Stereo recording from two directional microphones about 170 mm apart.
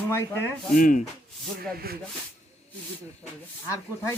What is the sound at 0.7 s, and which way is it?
Speech, 55° left (ahead or behind).